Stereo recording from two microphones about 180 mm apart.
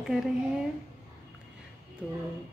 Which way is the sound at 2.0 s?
5° right (ahead or behind).